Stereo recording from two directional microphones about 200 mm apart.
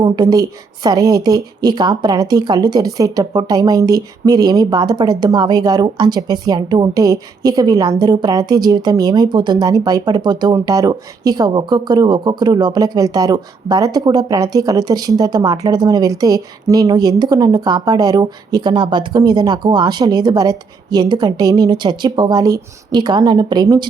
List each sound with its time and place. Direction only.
0.0 s a woman's voice: 20° right (ahead or behind)